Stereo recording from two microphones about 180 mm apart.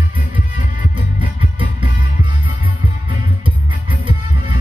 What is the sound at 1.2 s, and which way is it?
Music, 30° right (ahead or behind).